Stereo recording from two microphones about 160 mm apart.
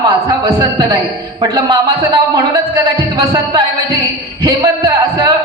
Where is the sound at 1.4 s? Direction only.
25° right (ahead or behind).